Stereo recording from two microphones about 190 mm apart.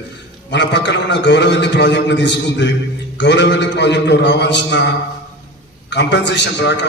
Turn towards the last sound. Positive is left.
turn(degrees=65)  # may be behind; listen again after turning